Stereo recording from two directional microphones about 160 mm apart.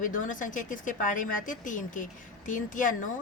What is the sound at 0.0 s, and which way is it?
A woman's voice, 55° left (ahead or behind).